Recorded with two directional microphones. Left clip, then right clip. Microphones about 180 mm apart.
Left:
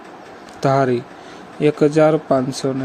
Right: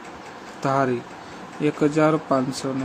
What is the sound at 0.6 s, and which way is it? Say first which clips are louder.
Speech: left 5 dB; 25° left (ahead or behind).